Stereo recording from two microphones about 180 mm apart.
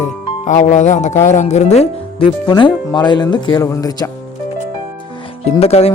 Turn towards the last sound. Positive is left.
turn(degrees=35)  # may be behind; listen again after turning